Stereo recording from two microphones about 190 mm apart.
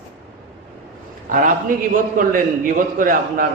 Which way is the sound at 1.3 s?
45° right (ahead or behind).